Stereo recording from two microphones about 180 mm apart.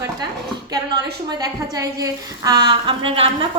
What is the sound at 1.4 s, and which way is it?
A woman's voice, 20° right (ahead or behind).